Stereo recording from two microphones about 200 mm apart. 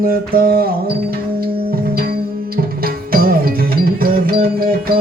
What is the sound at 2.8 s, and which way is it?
Tabla, 45° right (ahead or behind).